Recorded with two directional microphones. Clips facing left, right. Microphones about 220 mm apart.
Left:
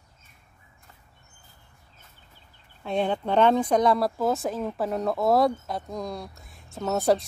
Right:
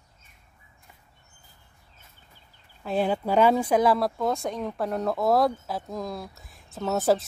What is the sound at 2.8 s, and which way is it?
Speech, 5° right (ahead or behind).